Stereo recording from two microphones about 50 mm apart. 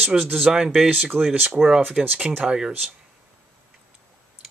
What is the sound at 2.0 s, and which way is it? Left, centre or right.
Speech, centre.